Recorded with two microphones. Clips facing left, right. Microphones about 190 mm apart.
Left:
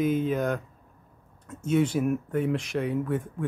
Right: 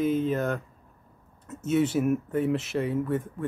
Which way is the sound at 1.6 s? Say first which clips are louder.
Even; 5° right (ahead or behind).